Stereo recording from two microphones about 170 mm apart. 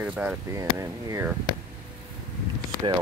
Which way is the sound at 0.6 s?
20° right (ahead or behind).